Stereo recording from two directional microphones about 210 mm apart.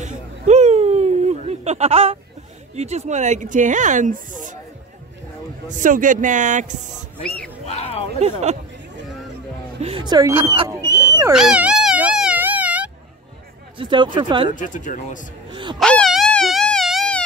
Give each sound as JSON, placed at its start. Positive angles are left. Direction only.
{"t": 0.0, "sound": "a sound", "side_deg": -35}
{"t": 2.7, "sound": "speech", "side_deg": -30}
{"t": 5.8, "sound": "speech", "side_deg": -40}
{"t": 7.6, "sound": "speech", "side_deg": 30}
{"t": 8.2, "sound": "speech", "side_deg": -30}
{"t": 9.8, "sound": "speech", "side_deg": -25}
{"t": 10.9, "sound": "a sound", "side_deg": 15}
{"t": 11.3, "sound": "a sound", "side_deg": -5}
{"t": 13.7, "sound": "speech", "side_deg": -25}
{"t": 14.5, "sound": "speech", "side_deg": 35}
{"t": 15.5, "sound": "wail", "side_deg": -20}
{"t": 15.8, "sound": "wail", "side_deg": 5}